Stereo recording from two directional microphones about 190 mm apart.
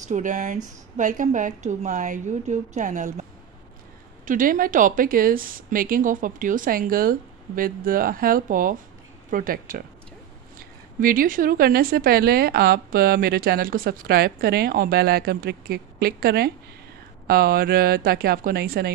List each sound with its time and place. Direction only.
0.0 s a woman's voice: 40° right (ahead or behind)
4.3 s a woman's voice: 45° right (ahead or behind)